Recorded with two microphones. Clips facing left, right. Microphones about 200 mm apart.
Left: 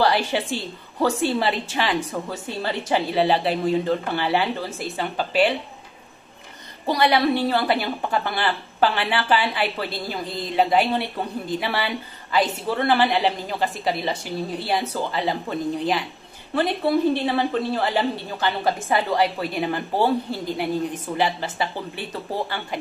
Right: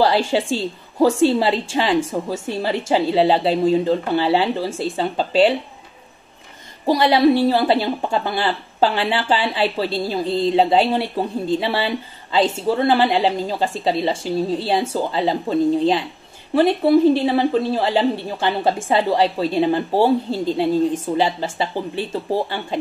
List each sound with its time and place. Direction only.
0.0 s speech: 25° right (ahead or behind)
6.9 s speech: 25° right (ahead or behind)